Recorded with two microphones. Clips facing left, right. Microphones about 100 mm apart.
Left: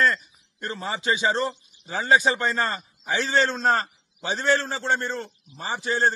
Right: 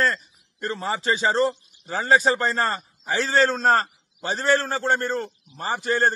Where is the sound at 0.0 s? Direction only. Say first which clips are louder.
Left 1 dB; 35° right (ahead or behind).